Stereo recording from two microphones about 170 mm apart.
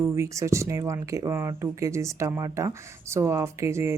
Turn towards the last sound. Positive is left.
turn(degrees=-15)  # may be behind; listen again after turning